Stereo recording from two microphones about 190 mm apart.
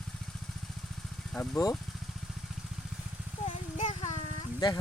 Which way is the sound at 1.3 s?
5° left (ahead or behind).